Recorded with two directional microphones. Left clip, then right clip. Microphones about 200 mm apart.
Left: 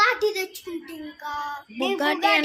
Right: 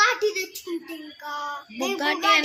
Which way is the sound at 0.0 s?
25° left (ahead or behind).